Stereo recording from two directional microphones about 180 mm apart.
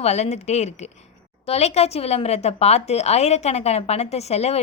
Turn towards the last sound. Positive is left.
turn(degrees=35)  # may be behind; listen again after turning